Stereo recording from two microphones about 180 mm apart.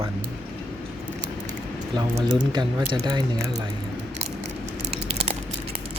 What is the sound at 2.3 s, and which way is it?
Speech, 25° right (ahead or behind).